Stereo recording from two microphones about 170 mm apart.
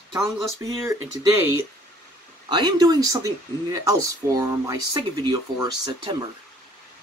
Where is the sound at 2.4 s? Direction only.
25° right (ahead or behind).